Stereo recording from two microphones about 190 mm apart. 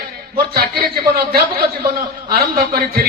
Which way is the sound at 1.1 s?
55° right (ahead or behind).